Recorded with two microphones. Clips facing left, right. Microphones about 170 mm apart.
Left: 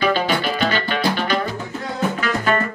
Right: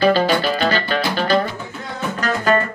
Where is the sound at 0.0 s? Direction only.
35° right (ahead or behind).